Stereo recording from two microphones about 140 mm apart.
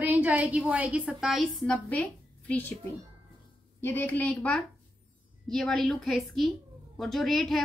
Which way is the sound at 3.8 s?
15° left (ahead or behind).